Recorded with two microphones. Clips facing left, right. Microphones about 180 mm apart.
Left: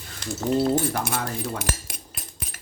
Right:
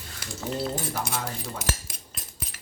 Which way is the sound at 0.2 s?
10° right (ahead or behind).